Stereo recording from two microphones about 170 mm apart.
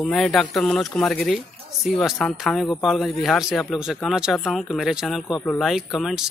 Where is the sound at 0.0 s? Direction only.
5° left (ahead or behind).